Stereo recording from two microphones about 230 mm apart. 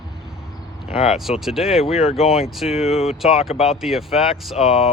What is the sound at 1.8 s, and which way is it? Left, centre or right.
Speech, left.